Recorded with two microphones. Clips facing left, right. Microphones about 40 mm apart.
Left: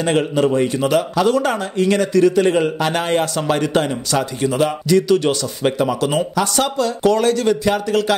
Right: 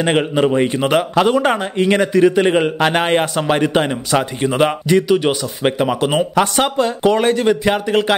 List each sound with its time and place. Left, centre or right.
0.0 s speech: right
5.0 s speech: centre